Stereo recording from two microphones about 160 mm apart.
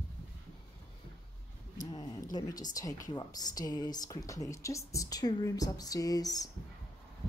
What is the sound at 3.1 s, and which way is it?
Speech, 25° left (ahead or behind).